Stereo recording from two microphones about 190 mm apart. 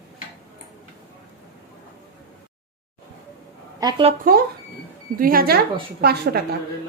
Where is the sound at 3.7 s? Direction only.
20° right (ahead or behind).